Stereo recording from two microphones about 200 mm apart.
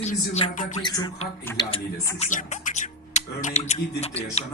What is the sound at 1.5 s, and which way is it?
Speech, 10° left (ahead or behind).